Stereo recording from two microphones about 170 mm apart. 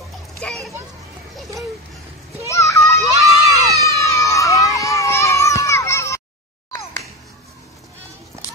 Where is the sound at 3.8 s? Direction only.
20° left (ahead or behind).